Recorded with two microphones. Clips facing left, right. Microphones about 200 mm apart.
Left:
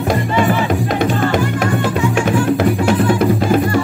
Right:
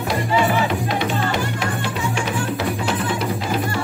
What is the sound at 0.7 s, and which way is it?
Music, 45° left (ahead or behind).